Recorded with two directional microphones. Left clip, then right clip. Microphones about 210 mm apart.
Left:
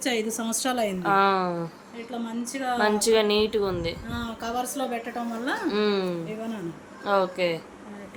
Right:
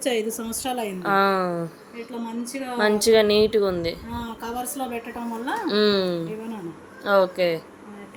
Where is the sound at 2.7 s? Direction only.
15° right (ahead or behind).